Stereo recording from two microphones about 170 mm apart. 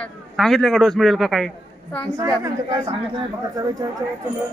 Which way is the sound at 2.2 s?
20° right (ahead or behind).